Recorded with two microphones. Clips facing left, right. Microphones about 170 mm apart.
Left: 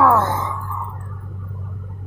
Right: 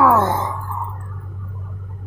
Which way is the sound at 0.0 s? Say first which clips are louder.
Right 1 dB; 5° right (ahead or behind).